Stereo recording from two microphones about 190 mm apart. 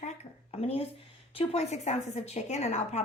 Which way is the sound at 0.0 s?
35° left (ahead or behind).